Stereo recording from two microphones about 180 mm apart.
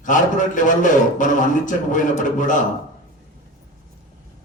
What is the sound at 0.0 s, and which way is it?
A man's voice, 45° left (ahead or behind).